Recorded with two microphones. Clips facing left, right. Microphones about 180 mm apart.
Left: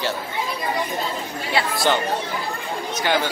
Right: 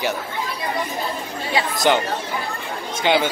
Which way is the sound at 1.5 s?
15° right (ahead or behind).